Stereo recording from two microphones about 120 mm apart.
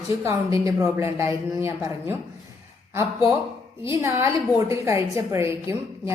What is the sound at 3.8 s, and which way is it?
A woman's voice, 20° right (ahead or behind).